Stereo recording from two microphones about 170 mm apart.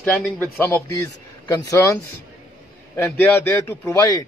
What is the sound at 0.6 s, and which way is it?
A man's voice, 15° left (ahead or behind).